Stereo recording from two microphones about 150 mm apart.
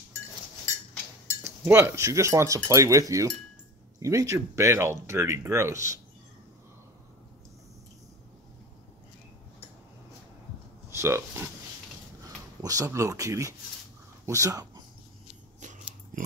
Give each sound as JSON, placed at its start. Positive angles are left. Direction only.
{"t": 1.4, "sound": "speech", "side_deg": -20}
{"t": 10.9, "sound": "speech", "side_deg": -15}
{"t": 12.6, "sound": "speech", "side_deg": -20}
{"t": 15.6, "sound": "dog", "side_deg": -55}